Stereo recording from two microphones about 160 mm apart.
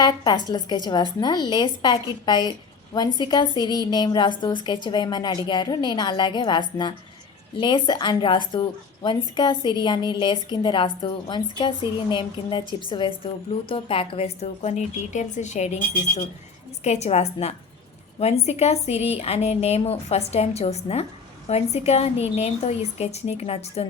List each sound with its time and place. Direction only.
0.0 s a woman's voice: 25° left (ahead or behind); by 23.8 s 40° left (ahead or behind)